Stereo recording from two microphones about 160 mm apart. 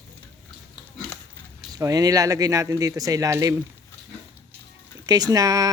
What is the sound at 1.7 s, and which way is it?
Speech, 20° right (ahead or behind).